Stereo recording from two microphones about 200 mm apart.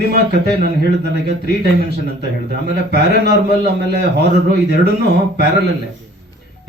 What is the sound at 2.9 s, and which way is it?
A man's voice, 55° right (ahead or behind).